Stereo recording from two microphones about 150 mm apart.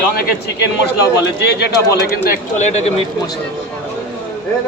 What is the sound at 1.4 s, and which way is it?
Speech, 90° left.